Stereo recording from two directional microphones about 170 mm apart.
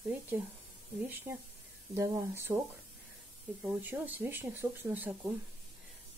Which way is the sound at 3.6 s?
10° right (ahead or behind).